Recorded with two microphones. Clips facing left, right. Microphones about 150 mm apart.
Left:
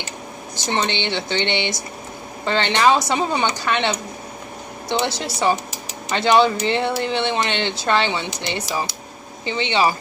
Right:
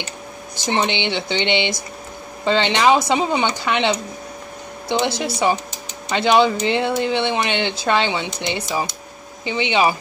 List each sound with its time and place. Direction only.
0.7 s speech: 15° right (ahead or behind)